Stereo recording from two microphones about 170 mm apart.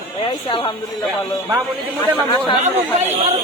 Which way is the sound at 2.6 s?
40° right (ahead or behind).